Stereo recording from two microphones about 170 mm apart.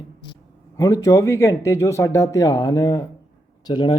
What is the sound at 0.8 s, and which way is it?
A man's voice, 20° left (ahead or behind).